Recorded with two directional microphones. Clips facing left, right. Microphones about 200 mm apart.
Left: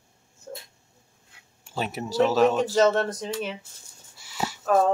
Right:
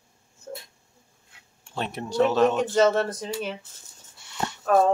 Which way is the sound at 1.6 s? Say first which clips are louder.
Left 1 dB; 5° left (ahead or behind).